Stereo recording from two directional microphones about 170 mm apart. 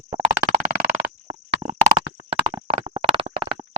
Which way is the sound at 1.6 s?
40° right (ahead or behind).